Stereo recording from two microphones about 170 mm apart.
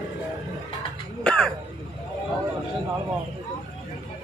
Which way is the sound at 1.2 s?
5° left (ahead or behind).